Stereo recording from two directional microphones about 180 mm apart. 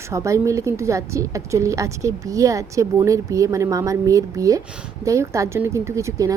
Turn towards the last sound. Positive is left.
turn(degrees=-15)  # may be behind; listen again after turning